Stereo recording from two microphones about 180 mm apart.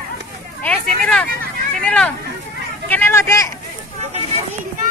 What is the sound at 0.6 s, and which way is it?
Vehicle, 5° left (ahead or behind).